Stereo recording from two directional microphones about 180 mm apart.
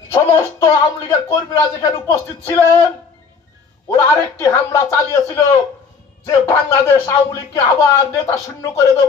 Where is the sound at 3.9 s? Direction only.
15° left (ahead or behind).